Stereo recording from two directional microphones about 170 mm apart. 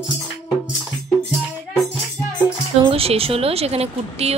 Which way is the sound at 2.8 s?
35° right (ahead or behind).